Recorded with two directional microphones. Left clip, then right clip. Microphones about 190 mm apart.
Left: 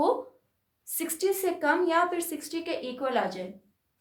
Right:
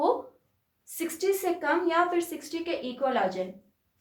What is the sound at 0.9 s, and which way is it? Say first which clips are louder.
A woman's voice: right 1 dB; 60° left (ahead or behind).